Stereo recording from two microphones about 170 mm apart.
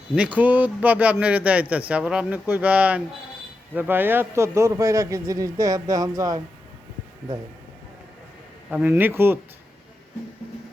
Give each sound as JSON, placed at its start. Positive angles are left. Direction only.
{"t": 0.2, "sound": "a man's voice", "side_deg": -10}
{"t": 8.7, "sound": "a man's voice", "side_deg": -10}